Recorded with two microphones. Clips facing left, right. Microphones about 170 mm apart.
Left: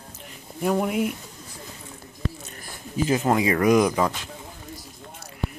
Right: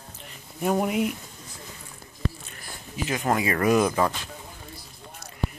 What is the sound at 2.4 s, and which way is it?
Speech, 45° left (ahead or behind).